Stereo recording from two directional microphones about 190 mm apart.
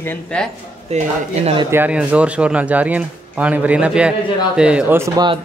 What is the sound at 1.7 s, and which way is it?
Speech, 10° right (ahead or behind).